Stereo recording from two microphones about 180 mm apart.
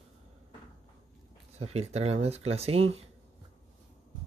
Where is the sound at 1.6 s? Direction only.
35° right (ahead or behind).